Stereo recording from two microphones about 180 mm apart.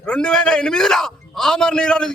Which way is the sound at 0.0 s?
5° left (ahead or behind).